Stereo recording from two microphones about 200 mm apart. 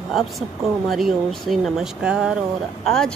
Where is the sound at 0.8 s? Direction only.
Centre (ahead or behind).